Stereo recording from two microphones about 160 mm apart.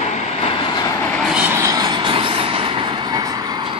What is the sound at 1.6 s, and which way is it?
Vehicle, 25° right (ahead or behind).